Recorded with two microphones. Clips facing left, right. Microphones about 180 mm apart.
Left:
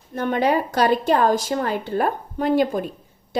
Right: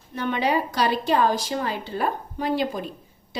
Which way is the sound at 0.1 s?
45° left (ahead or behind).